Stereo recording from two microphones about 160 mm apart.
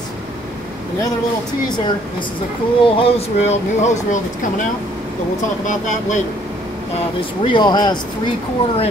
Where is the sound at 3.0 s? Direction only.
40° left (ahead or behind).